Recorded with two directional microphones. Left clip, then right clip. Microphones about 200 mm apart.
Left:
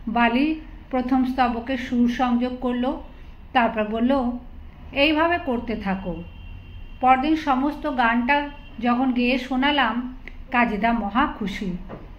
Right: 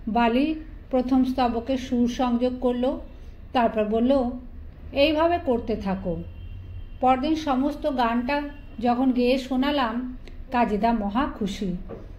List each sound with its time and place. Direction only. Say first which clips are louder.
0.1 s a woman's voice: left 2 dB; 35° right (ahead or behind)
7.0 s a woman's voice: left 3 dB; 35° right (ahead or behind)